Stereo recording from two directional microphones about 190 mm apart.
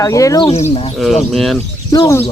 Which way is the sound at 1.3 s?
Centre (ahead or behind).